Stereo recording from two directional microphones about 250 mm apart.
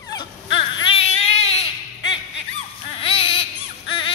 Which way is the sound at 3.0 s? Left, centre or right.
Left.